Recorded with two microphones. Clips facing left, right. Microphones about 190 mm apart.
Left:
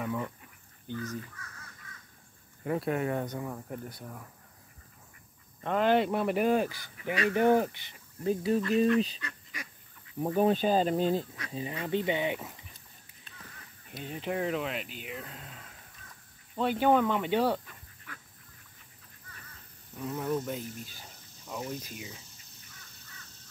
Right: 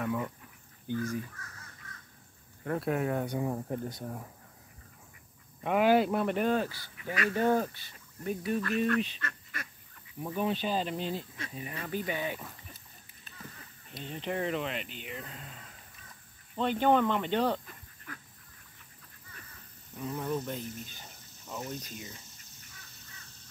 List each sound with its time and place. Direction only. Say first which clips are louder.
0.0 s a sound: right 1 dB; 5° right (ahead or behind)
0.8 s speech: right 4 dB; 10° right (ahead or behind)
2.6 s speech: left 1 dB; 5° left (ahead or behind)
3.3 s speech: right 5 dB; 25° right (ahead or behind)
5.6 s speech: right 1 dB; 10° right (ahead or behind); by 7.9 s 15° left (ahead or behind)
8.2 s speech: left 4 dB; 30° left (ahead or behind)
9.2 s duck: right 2 dB; 10° left (ahead or behind)
10.2 s speech: left 6 dB; 45° left (ahead or behind)
11.8 s speech: left 5 dB; 25° left (ahead or behind)
13.8 s speech: left 1 dB; 5° left (ahead or behind)
17.6 s dog: right 3 dB; 40° right (ahead or behind)
20.0 s speech: left 2 dB; centre (ahead or behind)